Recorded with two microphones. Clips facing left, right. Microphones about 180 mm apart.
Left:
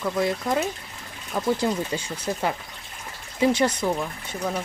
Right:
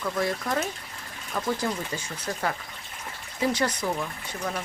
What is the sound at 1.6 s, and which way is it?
Speech, 30° left (ahead or behind).